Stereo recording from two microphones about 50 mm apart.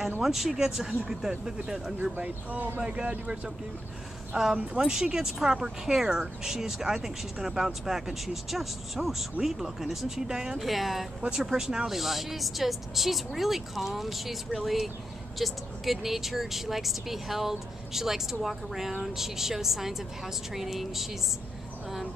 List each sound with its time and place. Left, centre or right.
0.2 s speech: centre
2.1 s speech: right
2.9 s speech: right
4.3 s speech: centre
10.6 s speech: centre